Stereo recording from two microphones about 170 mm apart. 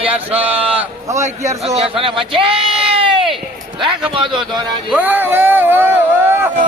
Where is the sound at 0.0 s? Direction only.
35° right (ahead or behind).